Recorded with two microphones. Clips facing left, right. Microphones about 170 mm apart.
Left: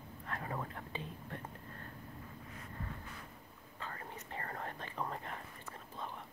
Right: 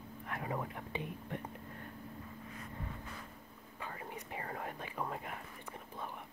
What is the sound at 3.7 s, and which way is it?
Whispering, 10° right (ahead or behind).